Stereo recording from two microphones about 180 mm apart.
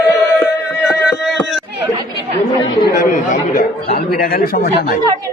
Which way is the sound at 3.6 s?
50° left (ahead or behind).